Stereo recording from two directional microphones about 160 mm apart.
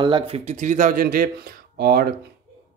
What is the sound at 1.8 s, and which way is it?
Speech, 75° right (ahead or behind).